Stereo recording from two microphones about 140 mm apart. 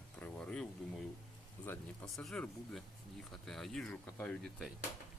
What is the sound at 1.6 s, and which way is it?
Speech, 15° left (ahead or behind).